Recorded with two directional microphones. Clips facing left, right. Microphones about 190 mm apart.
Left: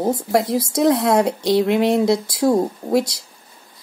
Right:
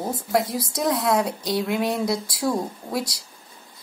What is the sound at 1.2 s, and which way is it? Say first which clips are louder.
Speech: left 7 dB; 25° left (ahead or behind).